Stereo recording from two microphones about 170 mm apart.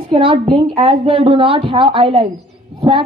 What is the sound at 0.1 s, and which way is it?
A woman's voice, 30° right (ahead or behind).